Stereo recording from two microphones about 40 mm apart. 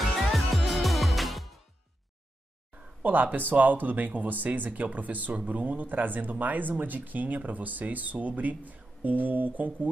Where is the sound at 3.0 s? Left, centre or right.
Right.